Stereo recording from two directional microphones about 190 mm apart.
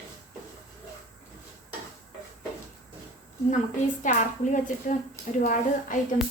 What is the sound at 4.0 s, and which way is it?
A woman's voice, 40° left (ahead or behind).